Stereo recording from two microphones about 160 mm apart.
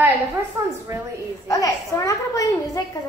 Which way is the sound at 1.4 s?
20° left (ahead or behind).